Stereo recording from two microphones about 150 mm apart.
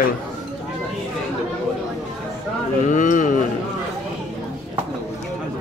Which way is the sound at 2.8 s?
60° left (ahead or behind).